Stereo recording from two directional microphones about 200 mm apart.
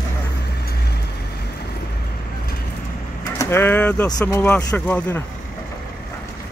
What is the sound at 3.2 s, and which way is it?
Vehicle, 15° left (ahead or behind).